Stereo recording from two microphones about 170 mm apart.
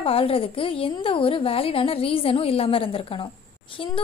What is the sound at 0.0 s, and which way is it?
A woman's voice, 35° left (ahead or behind).